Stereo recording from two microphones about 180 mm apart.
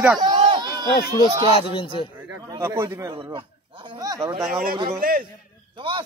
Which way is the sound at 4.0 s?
20° right (ahead or behind).